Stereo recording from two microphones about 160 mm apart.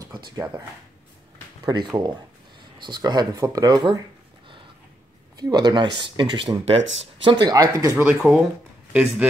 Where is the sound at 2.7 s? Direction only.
25° right (ahead or behind).